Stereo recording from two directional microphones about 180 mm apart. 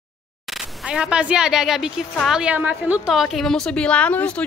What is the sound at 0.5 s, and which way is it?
Speech, 5° right (ahead or behind).